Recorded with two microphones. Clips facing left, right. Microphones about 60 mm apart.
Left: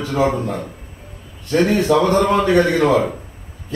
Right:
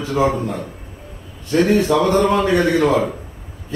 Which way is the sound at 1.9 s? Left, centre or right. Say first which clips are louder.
Left 3 dB; left.